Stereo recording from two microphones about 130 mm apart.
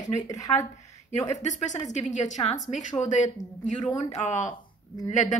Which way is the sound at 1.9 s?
60° left (ahead or behind).